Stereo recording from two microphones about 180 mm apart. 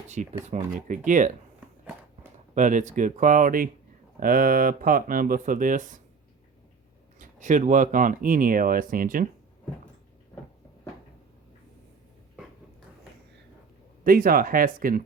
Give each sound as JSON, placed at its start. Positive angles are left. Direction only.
{"t": 0.4, "sound": "speech", "side_deg": -40}
{"t": 2.6, "sound": "speech", "side_deg": -45}
{"t": 7.2, "sound": "speech", "side_deg": -45}
{"t": 14.0, "sound": "speech", "side_deg": -55}